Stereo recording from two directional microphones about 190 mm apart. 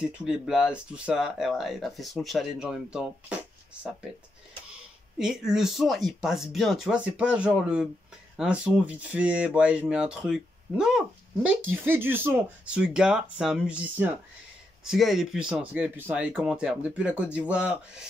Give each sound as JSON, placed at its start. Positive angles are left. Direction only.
{"t": 0.2, "sound": "speech", "side_deg": -5}
{"t": 5.2, "sound": "speech", "side_deg": -5}